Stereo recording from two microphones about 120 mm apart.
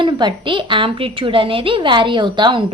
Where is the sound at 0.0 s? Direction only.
40° right (ahead or behind).